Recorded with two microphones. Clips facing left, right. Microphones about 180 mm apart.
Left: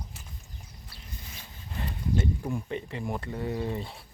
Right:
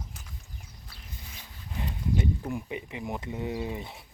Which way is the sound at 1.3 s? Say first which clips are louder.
Right 1 dB; 15° right (ahead or behind).